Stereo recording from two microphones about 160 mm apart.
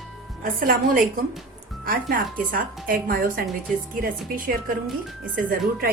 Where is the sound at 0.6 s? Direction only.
65° right (ahead or behind).